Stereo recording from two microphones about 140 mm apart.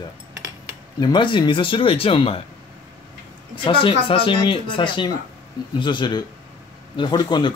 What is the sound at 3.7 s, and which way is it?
Speech, 40° left (ahead or behind).